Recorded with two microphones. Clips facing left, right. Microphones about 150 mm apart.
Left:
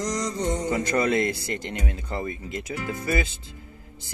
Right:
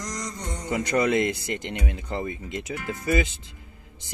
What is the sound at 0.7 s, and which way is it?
Speech, 20° right (ahead or behind).